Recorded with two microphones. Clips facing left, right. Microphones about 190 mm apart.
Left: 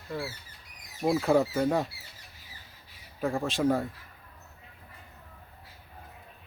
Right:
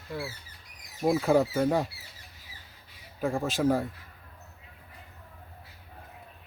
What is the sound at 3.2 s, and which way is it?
Speech, centre (ahead or behind).